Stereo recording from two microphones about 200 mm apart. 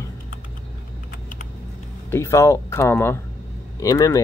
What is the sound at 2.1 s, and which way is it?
Speech, 15° left (ahead or behind).